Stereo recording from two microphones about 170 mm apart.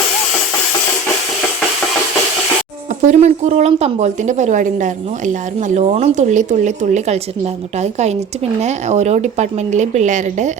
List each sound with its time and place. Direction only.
3.1 s a woman's voice: 40° right (ahead or behind)